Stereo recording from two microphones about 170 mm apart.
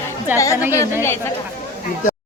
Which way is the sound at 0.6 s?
15° right (ahead or behind).